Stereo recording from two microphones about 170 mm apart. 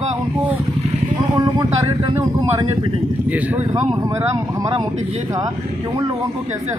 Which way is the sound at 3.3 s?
10° right (ahead or behind).